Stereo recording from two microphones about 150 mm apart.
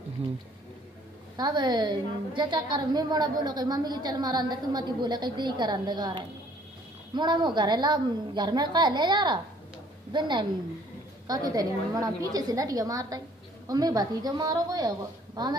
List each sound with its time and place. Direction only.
1.3 s a woman's voice: 25° right (ahead or behind)